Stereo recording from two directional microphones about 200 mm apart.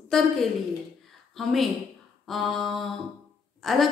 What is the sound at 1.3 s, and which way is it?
A woman's voice, centre (ahead or behind).